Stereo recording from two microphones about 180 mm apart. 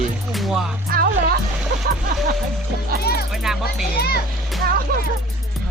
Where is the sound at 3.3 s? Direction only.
Centre (ahead or behind).